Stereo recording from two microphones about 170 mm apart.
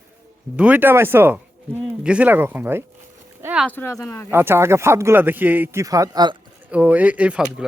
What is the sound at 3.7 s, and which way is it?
Speech, 15° left (ahead or behind).